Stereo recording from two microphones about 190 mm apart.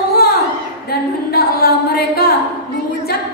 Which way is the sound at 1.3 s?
55° left (ahead or behind).